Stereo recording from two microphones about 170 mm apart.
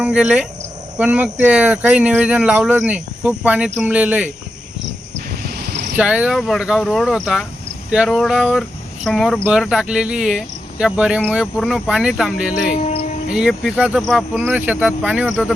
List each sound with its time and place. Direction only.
0.0 s speech: 5° right (ahead or behind)
5.4 s a sound: 70° right (ahead or behind)
6.0 s speech: 5° right (ahead or behind)